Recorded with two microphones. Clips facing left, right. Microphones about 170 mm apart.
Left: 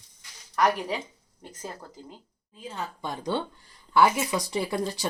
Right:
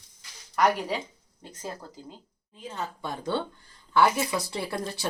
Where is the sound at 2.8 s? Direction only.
15° left (ahead or behind).